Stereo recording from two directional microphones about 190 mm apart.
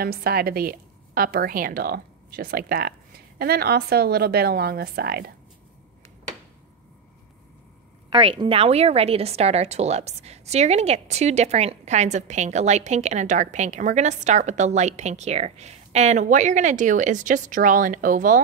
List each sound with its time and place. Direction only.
0.0 s a woman's voice: 55° right (ahead or behind)
8.1 s a woman's voice: 30° right (ahead or behind); by 18.4 s 45° right (ahead or behind)